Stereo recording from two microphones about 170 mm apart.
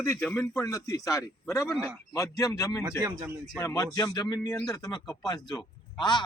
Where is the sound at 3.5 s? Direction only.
20° left (ahead or behind).